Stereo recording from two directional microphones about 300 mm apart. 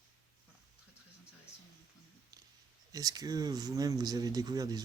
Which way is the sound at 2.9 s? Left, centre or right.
Centre.